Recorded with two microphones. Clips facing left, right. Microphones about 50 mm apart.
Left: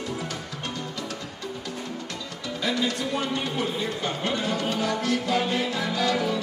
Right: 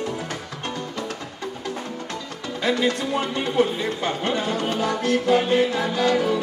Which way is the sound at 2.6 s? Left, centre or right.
Right.